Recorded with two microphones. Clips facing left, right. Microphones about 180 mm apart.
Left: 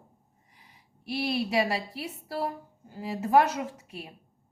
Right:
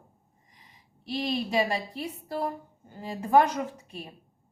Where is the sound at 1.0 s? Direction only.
10° left (ahead or behind).